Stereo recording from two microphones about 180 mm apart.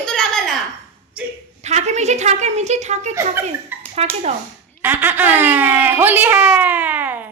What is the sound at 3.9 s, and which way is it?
Speech, 40° right (ahead or behind).